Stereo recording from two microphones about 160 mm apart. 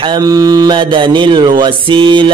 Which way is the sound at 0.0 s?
25° right (ahead or behind).